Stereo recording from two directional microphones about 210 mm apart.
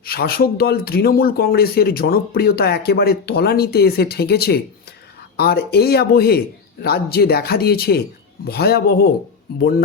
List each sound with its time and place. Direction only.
0.0 s speech: 45° left (ahead or behind)